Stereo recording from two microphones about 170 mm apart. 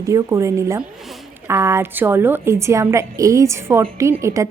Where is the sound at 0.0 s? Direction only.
20° right (ahead or behind).